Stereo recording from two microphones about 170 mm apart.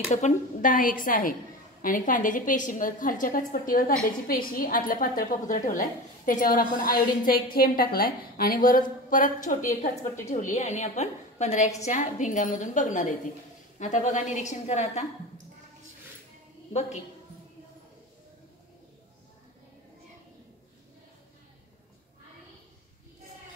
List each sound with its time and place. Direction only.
0.1 s a woman's voice: 50° left (ahead or behind)